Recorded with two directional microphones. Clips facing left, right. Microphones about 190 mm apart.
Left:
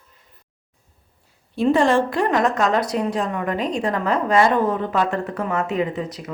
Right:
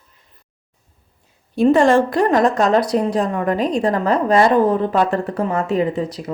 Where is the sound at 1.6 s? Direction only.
45° right (ahead or behind).